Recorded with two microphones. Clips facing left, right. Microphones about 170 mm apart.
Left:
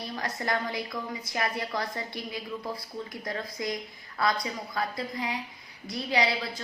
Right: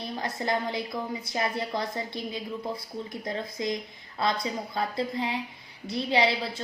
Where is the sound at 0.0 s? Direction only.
25° right (ahead or behind).